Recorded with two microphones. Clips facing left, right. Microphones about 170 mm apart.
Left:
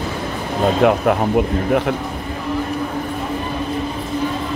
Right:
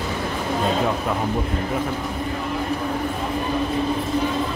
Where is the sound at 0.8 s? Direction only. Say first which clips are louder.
Left 8 dB; 70° left (ahead or behind).